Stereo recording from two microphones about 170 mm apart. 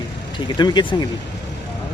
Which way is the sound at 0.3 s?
25° left (ahead or behind).